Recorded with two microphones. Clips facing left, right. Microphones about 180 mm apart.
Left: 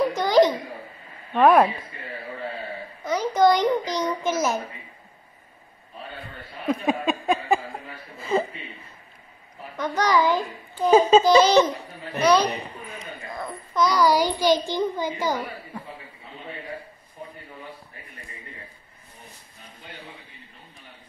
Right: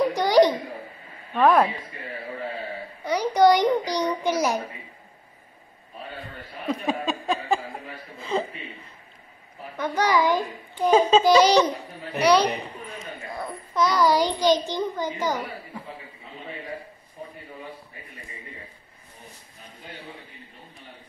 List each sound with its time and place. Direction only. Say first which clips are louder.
0.1 s babbling: even; 15° right (ahead or behind)
1.4 s speech: left 2 dB; 10° left (ahead or behind)
3.0 s a child's voice: right 1 dB; 15° right (ahead or behind)
6.7 s a sound: left 3 dB; 15° left (ahead or behind)
8.2 s speech: left 3 dB; 5° left (ahead or behind)
9.8 s a child's voice: even; 10° right (ahead or behind)
10.9 s a child's voice: left 2 dB; 5° left (ahead or behind)
11.2 s a child's voice: left 1 dB; 15° right (ahead or behind); by 15.3 s 10° left (ahead or behind)